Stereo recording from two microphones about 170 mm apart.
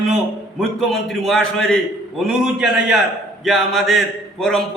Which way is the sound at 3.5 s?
Centre (ahead or behind).